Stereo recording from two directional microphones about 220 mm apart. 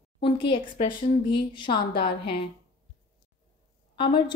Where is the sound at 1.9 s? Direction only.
50° left (ahead or behind).